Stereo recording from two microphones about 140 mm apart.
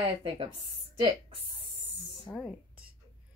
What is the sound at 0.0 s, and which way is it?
Speech, 35° right (ahead or behind).